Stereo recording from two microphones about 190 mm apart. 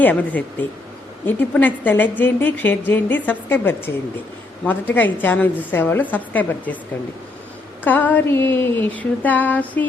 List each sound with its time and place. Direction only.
0.0 s a woman's voice: 10° left (ahead or behind)
7.9 s a woman's voice: 10° left (ahead or behind)